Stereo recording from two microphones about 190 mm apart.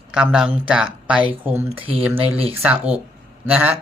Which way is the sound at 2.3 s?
30° right (ahead or behind).